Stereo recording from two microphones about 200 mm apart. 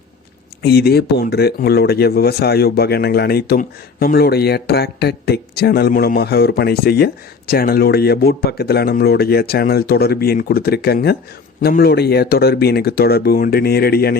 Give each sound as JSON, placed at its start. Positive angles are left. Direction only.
{"t": 0.6, "sound": "speech", "side_deg": 50}